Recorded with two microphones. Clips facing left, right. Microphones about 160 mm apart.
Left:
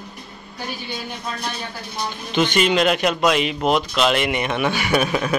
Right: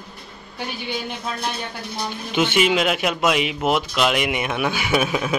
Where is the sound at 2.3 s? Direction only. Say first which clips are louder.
Left 1 dB; 10° right (ahead or behind).